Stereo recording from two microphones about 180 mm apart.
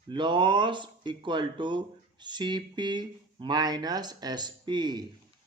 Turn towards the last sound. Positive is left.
turn(degrees=-25)  # may be behind; listen again after turning